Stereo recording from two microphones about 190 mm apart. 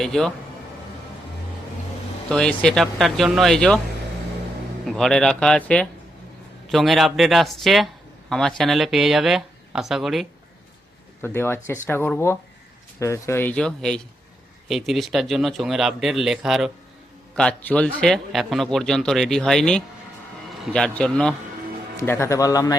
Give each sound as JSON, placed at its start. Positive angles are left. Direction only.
{"t": 0.0, "sound": "a man's voice", "side_deg": 0}
{"t": 2.3, "sound": "a man's voice", "side_deg": 5}
{"t": 4.9, "sound": "a man's voice", "side_deg": 0}
{"t": 11.2, "sound": "a man's voice", "side_deg": 10}